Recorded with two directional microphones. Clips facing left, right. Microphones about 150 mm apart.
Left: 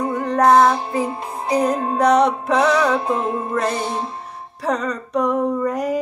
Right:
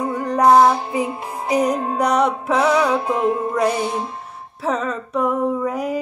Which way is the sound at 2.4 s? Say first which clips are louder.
Even; 5° right (ahead or behind).